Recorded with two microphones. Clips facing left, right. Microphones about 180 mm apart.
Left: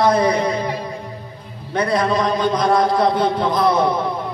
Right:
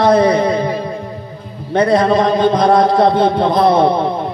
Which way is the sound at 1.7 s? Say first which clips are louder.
Right 6 dB; 30° right (ahead or behind).